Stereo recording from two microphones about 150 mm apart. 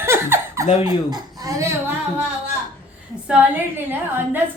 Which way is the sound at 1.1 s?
25° right (ahead or behind).